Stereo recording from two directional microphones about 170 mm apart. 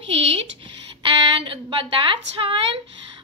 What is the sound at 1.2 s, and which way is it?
A woman's voice, 30° right (ahead or behind).